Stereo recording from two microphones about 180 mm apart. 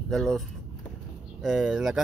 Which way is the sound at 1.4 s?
5° right (ahead or behind).